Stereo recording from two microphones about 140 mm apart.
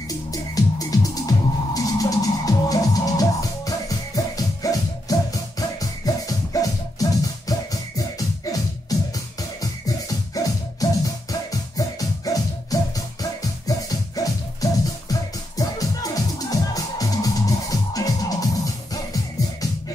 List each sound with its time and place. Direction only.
0.3 s music: 25° left (ahead or behind)